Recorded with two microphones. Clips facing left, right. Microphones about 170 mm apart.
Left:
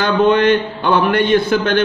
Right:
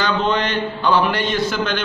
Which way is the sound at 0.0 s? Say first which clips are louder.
Left 7 dB; 55° left (ahead or behind).